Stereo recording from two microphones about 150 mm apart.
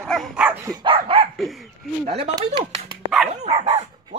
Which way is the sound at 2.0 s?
45° right (ahead or behind).